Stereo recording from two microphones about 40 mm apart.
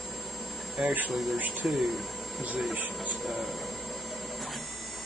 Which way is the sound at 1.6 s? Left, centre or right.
Centre.